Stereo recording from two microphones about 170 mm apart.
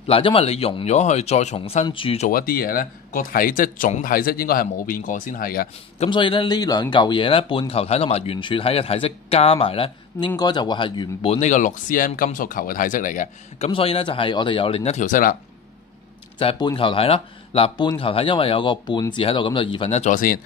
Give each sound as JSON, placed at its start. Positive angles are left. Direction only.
{"t": 0.0, "sound": "speech", "side_deg": 35}
{"t": 2.2, "sound": "speech", "side_deg": 60}
{"t": 6.0, "sound": "speech", "side_deg": 30}
{"t": 13.7, "sound": "speech", "side_deg": 35}
{"t": 16.3, "sound": "speech", "side_deg": 25}